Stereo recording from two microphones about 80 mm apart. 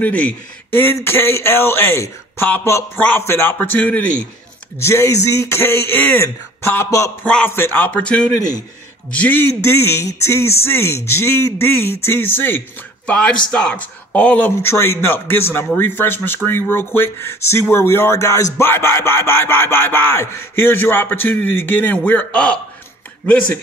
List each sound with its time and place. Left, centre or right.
0.0 s a man's voice: left
3.5 s speech: left
4.7 s a man's voice: left
7.4 s speech: left
8.4 s a man's voice: left
9.1 s a man's voice: left
13.0 s speech: centre
14.6 s speech: left